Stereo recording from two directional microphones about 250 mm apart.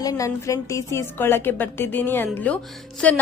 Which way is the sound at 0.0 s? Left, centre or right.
Centre.